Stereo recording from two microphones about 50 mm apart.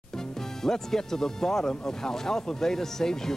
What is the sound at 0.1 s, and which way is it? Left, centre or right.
Speech, centre.